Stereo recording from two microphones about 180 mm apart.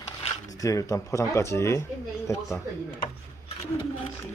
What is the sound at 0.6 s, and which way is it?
Speech, 20° left (ahead or behind).